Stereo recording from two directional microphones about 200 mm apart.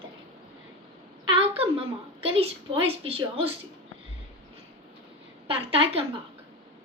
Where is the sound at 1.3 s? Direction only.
25° right (ahead or behind).